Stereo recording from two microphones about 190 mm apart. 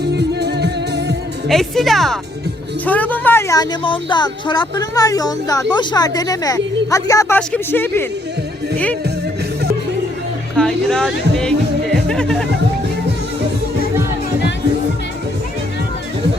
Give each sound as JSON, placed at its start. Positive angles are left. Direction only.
{"t": 0.0, "sound": "music", "side_deg": -60}
{"t": 1.5, "sound": "speech", "side_deg": 0}
{"t": 10.6, "sound": "speech", "side_deg": 5}
{"t": 11.9, "sound": "music", "side_deg": 0}